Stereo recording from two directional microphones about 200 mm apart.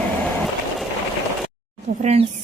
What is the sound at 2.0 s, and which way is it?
Speech, 35° right (ahead or behind).